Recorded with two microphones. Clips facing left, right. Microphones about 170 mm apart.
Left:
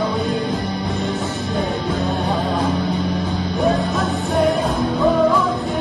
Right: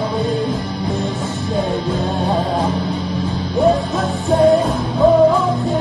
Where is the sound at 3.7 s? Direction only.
30° right (ahead or behind).